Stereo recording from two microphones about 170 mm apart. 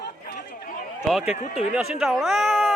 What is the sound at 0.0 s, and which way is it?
Chatter, 65° left (ahead or behind).